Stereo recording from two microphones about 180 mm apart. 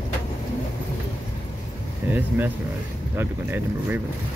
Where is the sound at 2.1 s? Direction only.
10° right (ahead or behind).